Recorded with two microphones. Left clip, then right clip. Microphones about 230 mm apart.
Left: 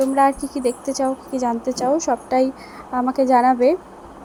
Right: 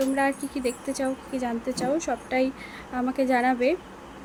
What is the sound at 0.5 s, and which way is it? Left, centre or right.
Speech, left.